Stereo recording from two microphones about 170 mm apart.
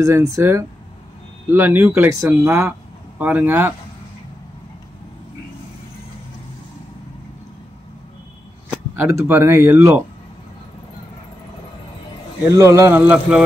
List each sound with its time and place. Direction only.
0.0 s speech: 15° right (ahead or behind)
9.0 s speech: 15° right (ahead or behind)
12.4 s speech: 15° right (ahead or behind)